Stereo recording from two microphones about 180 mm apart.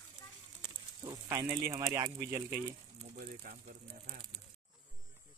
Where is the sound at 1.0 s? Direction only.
20° right (ahead or behind).